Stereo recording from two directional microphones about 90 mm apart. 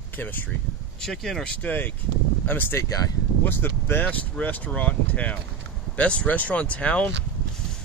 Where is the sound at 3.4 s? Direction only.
25° left (ahead or behind).